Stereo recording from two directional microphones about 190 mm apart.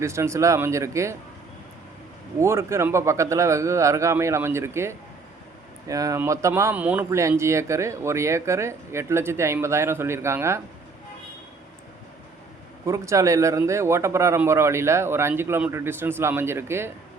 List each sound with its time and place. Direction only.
0.0 s speech: 15° right (ahead or behind)
2.4 s speech: 15° right (ahead or behind)
12.8 s speech: 15° right (ahead or behind)